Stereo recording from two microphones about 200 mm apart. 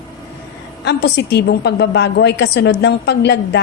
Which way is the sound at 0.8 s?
55° left (ahead or behind).